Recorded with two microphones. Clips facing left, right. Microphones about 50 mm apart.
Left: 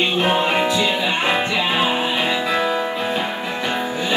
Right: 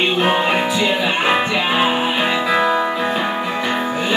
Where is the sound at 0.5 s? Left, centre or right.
Centre.